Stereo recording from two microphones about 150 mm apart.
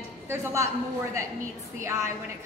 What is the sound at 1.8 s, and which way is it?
Speech, 20° right (ahead or behind).